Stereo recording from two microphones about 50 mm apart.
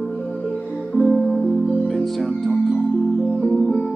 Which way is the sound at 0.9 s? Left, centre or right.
Centre.